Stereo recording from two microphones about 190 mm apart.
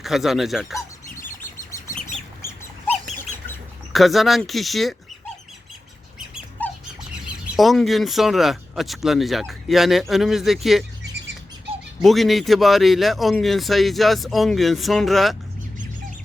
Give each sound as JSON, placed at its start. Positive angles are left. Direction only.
{"t": 0.0, "sound": "speech", "side_deg": 0}
{"t": 3.9, "sound": "speech", "side_deg": 0}
{"t": 6.6, "sound": "squawk", "side_deg": 10}
{"t": 7.5, "sound": "speech", "side_deg": 0}
{"t": 12.0, "sound": "speech", "side_deg": 0}